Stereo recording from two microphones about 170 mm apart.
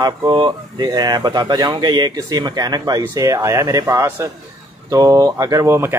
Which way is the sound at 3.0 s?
20° right (ahead or behind).